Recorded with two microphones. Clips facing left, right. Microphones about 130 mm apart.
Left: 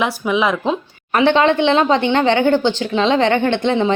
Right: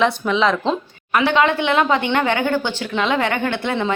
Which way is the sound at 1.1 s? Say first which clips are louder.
Left 3 dB; 30° left (ahead or behind).